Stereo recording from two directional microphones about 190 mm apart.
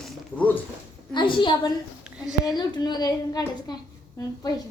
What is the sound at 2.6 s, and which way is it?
A woman's voice, 25° left (ahead or behind).